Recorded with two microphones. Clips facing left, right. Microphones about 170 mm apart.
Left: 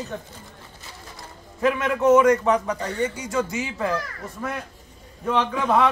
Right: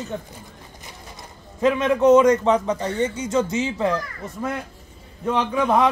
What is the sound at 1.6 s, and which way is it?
A man's voice, 20° right (ahead or behind).